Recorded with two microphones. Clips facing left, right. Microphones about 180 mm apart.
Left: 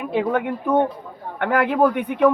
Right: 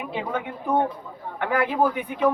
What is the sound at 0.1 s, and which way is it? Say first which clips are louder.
Speech: left 10 dB; 55° left (ahead or behind).